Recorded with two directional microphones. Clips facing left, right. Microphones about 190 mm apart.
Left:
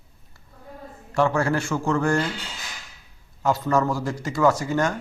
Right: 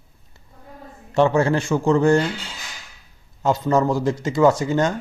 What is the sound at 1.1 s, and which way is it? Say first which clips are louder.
A man's voice: right 4 dB; 20° right (ahead or behind).